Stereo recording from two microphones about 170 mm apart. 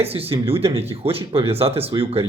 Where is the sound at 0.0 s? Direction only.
35° right (ahead or behind).